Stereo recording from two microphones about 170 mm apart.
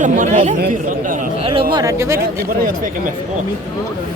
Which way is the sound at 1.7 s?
15° right (ahead or behind).